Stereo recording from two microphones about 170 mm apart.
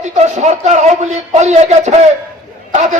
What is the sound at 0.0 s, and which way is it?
A man's voice, 40° right (ahead or behind).